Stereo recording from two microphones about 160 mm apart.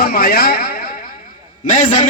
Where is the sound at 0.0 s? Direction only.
70° left (ahead or behind).